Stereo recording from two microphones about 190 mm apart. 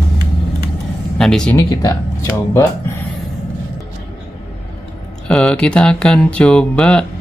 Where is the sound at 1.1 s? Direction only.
5° left (ahead or behind).